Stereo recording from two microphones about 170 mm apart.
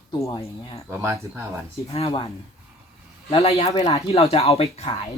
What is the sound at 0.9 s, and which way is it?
Speech, 15° right (ahead or behind).